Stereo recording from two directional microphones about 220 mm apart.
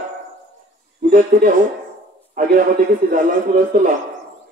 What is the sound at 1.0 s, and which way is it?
Speech, 35° right (ahead or behind).